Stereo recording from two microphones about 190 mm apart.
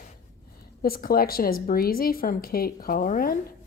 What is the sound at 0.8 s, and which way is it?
Speech, 50° left (ahead or behind).